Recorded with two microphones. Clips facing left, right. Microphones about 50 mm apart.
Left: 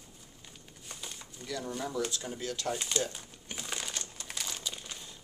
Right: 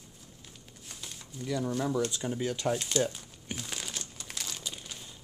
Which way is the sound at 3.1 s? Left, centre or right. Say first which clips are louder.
Right 3 dB; centre.